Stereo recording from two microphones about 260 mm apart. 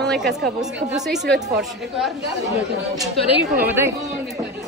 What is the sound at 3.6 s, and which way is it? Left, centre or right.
Speech, centre.